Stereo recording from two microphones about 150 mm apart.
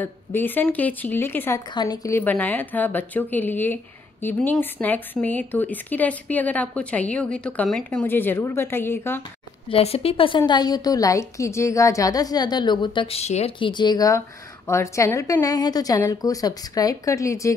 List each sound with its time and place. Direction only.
0.0 s a woman's voice: 15° left (ahead or behind)
1.7 s a woman's voice: 25° left (ahead or behind)
9.7 s a woman's voice: 40° left (ahead or behind)
13.7 s a woman's voice: 30° left (ahead or behind)